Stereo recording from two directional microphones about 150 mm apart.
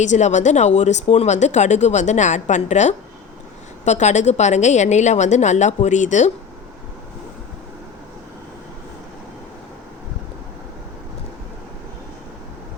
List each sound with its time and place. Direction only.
0.0 s speech: 50° left (ahead or behind)